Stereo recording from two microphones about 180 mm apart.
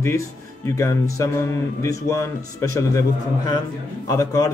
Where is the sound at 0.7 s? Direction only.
15° left (ahead or behind).